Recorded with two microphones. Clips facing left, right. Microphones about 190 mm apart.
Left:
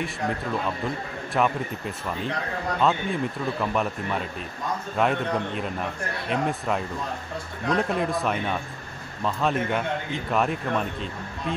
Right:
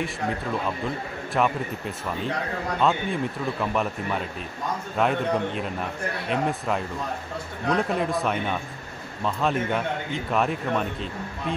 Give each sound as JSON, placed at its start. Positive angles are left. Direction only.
{"t": 1.3, "sound": "a man's voice", "side_deg": 0}